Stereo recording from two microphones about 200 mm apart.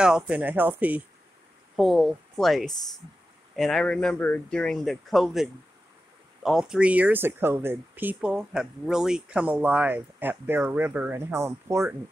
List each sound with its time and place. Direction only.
0.0 s speech: 5° right (ahead or behind)